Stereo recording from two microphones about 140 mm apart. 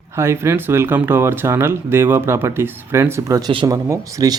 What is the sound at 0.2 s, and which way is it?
Speech, 20° right (ahead or behind).